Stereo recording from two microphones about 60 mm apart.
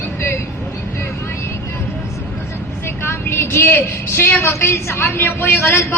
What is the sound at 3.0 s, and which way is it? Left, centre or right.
A woman's voice, left.